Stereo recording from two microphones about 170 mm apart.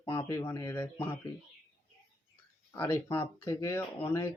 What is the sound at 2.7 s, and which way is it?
Speech, 15° left (ahead or behind).